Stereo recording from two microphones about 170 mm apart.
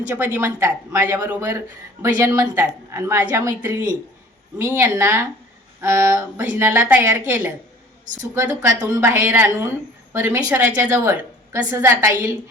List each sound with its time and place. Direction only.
0.0 s speech: 10° right (ahead or behind)
8.9 s speech: 15° right (ahead or behind)